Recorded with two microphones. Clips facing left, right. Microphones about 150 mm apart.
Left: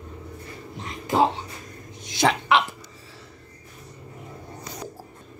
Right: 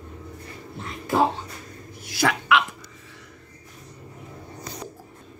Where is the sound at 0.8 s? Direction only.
20° left (ahead or behind).